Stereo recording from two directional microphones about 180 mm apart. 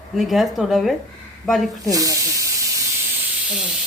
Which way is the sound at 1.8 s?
20° right (ahead or behind).